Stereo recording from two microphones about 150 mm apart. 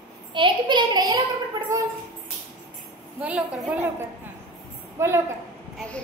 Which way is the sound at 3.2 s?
10° right (ahead or behind).